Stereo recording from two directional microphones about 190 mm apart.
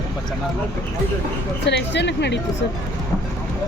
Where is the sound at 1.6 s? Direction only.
65° left (ahead or behind).